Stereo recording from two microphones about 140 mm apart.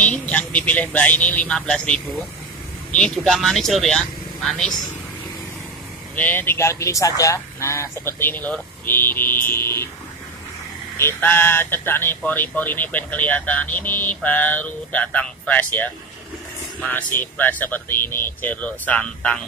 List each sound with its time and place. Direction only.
0.0 s speech: 10° left (ahead or behind)
6.1 s speech: 15° left (ahead or behind)
11.0 s speech: 15° left (ahead or behind)
17.2 s speech: 10° left (ahead or behind)